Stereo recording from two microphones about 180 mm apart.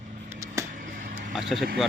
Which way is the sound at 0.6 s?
15° right (ahead or behind).